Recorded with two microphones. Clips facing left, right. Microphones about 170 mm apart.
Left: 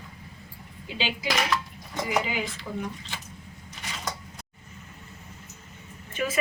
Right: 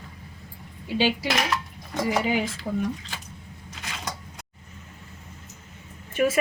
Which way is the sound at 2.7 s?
45° right (ahead or behind).